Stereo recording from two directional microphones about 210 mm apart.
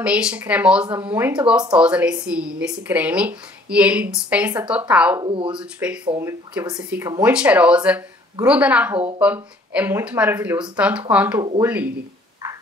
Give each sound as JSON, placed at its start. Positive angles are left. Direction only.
{"t": 0.0, "sound": "speech", "side_deg": -5}
{"t": 5.2, "sound": "speech", "side_deg": -25}
{"t": 5.6, "sound": "a woman's voice", "side_deg": -5}